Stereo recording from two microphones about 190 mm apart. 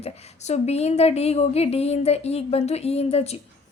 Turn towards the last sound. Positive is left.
turn(degrees=35)  # may be behind; listen again after turning